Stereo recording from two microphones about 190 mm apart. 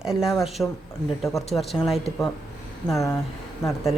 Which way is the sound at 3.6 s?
15° left (ahead or behind).